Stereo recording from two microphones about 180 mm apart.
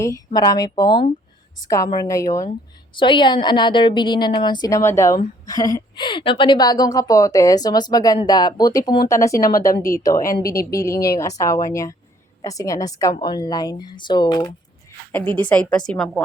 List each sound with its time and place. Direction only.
0.3 s a woman's voice: 20° left (ahead or behind)
15.1 s a woman's voice: 10° left (ahead or behind)